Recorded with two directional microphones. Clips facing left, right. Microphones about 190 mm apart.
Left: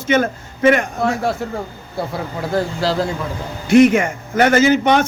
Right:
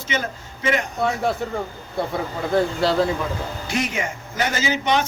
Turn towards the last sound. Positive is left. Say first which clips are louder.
# left 8 dB
turn(degrees=55)  # may be behind; listen again after turning